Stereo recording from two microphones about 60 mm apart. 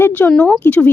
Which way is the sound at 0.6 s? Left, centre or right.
Left.